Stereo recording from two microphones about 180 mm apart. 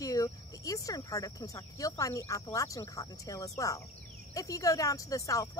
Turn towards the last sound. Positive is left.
turn(degrees=20)  # may be behind; listen again after turning